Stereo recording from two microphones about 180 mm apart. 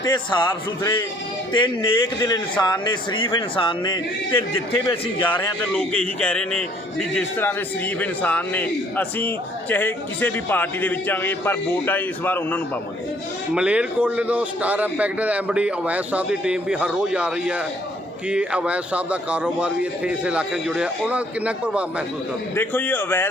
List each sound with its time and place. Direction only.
0.0 s a man's voice: 25° left (ahead or behind)
1.5 s a man's voice: 25° left (ahead or behind)
5.3 s a man's voice: 10° left (ahead or behind)
13.5 s a man's voice: 5° right (ahead or behind)
22.5 s a man's voice: 10° left (ahead or behind)